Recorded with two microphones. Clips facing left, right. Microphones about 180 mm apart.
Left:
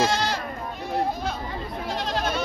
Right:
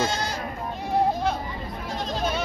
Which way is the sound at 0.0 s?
80° left.